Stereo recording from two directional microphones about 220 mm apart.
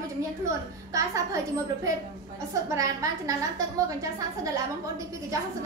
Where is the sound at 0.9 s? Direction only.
15° right (ahead or behind).